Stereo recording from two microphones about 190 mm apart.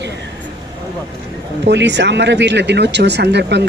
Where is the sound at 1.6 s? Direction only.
65° right (ahead or behind).